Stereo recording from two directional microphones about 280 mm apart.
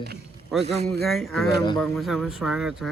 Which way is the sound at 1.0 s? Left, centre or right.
Centre.